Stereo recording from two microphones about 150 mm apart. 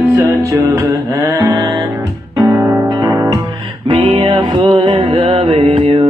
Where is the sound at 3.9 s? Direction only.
35° right (ahead or behind).